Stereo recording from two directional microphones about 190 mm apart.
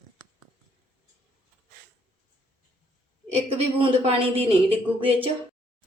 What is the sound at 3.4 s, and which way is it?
Speech, 30° right (ahead or behind).